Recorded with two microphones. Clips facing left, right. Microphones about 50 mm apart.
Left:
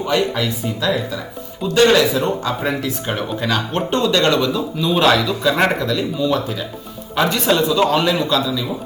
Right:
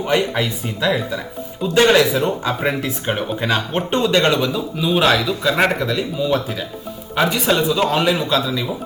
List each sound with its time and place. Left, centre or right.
0.0 s speech: right